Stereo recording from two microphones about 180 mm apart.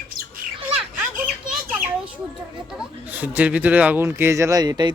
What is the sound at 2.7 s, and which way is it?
Speech, 5° right (ahead or behind).